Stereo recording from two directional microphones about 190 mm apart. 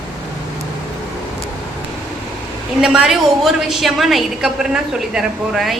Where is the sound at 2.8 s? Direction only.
5° right (ahead or behind).